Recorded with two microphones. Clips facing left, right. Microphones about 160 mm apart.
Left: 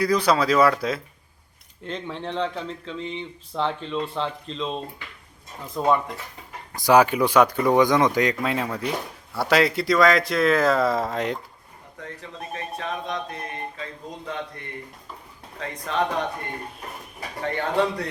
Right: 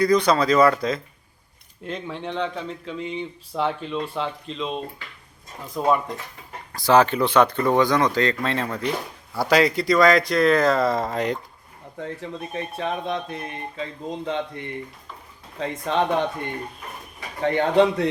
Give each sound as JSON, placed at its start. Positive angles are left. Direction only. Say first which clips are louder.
{"t": 0.0, "sound": "speech", "louder": "right 2 dB", "side_deg": 5}
{"t": 1.8, "sound": "speech", "louder": "right 1 dB", "side_deg": -5}
{"t": 6.7, "sound": "speech", "louder": "even", "side_deg": 15}
{"t": 11.9, "sound": "speech", "louder": "right 6 dB", "side_deg": -30}
{"t": 15.6, "sound": "speech", "louder": "right 5 dB", "side_deg": -30}
{"t": 17.4, "sound": "speech", "louder": "right 6 dB", "side_deg": -20}